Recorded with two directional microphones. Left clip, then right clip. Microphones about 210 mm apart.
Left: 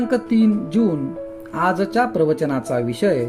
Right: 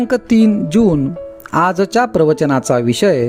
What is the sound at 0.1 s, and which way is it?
Speech, 55° right (ahead or behind).